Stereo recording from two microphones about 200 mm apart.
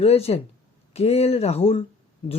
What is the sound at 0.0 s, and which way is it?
Speech, 30° left (ahead or behind).